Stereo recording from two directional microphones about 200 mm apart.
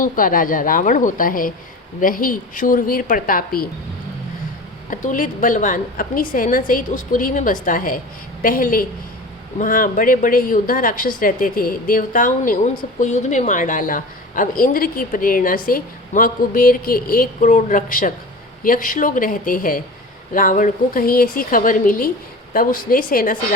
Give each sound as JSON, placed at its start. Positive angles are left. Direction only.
{"t": 0.0, "sound": "a woman's voice", "side_deg": 45}
{"t": 4.9, "sound": "a woman's voice", "side_deg": 40}